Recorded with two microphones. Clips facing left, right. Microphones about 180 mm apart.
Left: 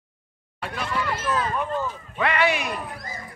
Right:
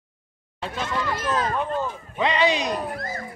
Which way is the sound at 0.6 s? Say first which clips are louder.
Right 2 dB; 25° right (ahead or behind).